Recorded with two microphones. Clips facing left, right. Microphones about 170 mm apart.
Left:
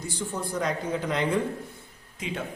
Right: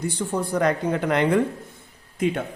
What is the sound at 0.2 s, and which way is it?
A man's voice, 60° right (ahead or behind).